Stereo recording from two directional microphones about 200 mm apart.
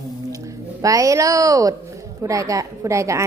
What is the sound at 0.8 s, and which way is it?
A woman's voice, 15° right (ahead or behind).